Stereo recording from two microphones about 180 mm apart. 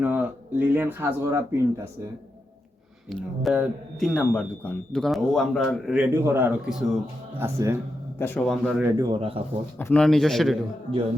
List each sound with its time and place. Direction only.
0.0 s speech: 10° right (ahead or behind)
3.1 s speech: centre (ahead or behind)
8.2 s a man's voice: 10° left (ahead or behind)
8.4 s speech: centre (ahead or behind)
8.9 s speech: 20° right (ahead or behind)
9.7 s speech: 10° left (ahead or behind)